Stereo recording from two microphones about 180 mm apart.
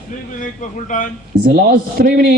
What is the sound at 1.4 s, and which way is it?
Speech, 55° right (ahead or behind).